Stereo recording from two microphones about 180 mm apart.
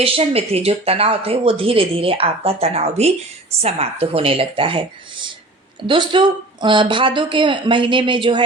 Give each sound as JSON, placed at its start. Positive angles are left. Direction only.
{"t": 0.0, "sound": "speech", "side_deg": -35}